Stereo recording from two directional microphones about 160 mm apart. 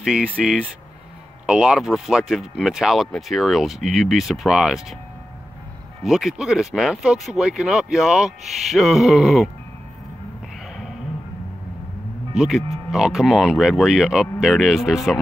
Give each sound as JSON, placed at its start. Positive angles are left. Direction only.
{"t": 0.0, "sound": "speech", "side_deg": -5}
{"t": 6.0, "sound": "speech", "side_deg": -5}
{"t": 12.4, "sound": "speech", "side_deg": -5}